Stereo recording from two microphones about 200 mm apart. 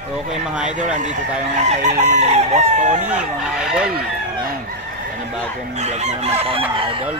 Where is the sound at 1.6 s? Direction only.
35° right (ahead or behind).